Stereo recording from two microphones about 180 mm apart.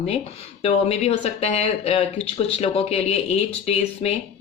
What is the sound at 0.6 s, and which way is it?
A woman's voice, 35° left (ahead or behind).